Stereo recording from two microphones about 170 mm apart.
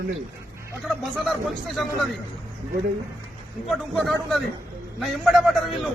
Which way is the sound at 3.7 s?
Centre (ahead or behind).